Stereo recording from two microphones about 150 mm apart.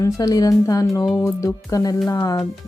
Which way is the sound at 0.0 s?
25° left (ahead or behind).